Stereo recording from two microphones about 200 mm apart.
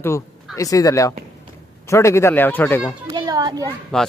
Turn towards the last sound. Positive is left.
turn(degrees=5)  # may be behind; listen again after turning